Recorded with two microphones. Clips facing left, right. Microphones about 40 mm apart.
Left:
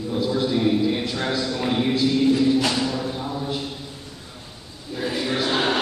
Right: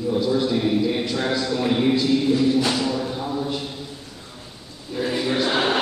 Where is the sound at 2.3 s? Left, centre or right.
Right.